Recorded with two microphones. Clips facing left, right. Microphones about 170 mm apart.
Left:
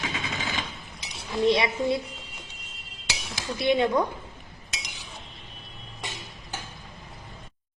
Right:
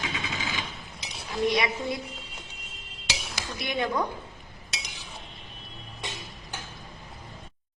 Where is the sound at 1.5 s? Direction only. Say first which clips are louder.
Left 5 dB; 25° left (ahead or behind).